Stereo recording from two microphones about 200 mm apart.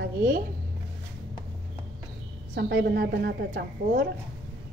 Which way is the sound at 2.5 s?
60° right (ahead or behind).